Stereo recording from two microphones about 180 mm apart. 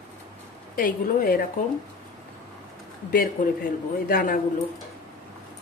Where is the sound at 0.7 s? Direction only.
50° left (ahead or behind).